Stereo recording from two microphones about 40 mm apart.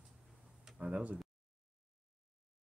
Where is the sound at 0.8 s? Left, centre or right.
Right.